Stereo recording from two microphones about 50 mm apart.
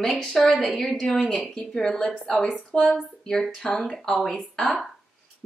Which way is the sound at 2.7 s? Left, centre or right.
Centre.